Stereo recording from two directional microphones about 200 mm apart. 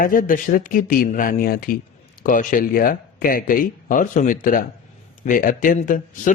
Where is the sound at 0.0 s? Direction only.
45° left (ahead or behind).